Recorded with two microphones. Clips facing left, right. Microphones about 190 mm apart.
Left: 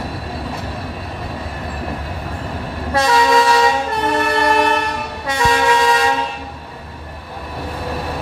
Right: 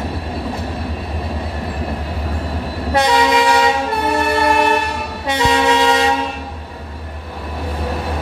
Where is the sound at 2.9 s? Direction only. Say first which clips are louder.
Even; 20° right (ahead or behind).